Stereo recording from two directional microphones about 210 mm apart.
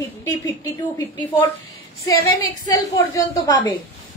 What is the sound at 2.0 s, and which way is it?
Speech, 15° left (ahead or behind).